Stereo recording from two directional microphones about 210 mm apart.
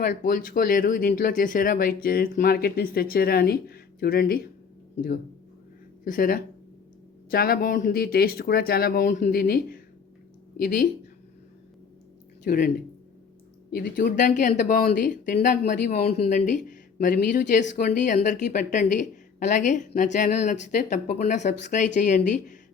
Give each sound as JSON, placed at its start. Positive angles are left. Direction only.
{"t": 0.0, "sound": "speech", "side_deg": 40}
{"t": 6.1, "sound": "speech", "side_deg": 40}
{"t": 12.5, "sound": "speech", "side_deg": 40}